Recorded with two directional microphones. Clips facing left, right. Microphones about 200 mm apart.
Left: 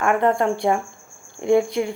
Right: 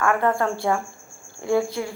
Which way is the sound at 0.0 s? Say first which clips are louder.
Left 2 dB; 20° left (ahead or behind).